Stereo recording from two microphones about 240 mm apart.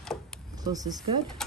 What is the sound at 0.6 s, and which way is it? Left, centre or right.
Speech, centre.